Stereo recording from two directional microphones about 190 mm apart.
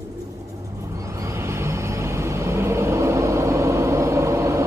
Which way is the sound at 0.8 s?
15° right (ahead or behind).